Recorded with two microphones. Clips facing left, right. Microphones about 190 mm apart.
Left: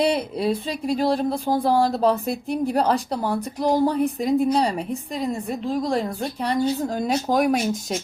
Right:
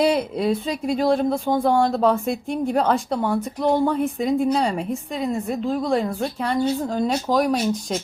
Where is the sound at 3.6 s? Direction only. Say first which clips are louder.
Even; 35° left (ahead or behind).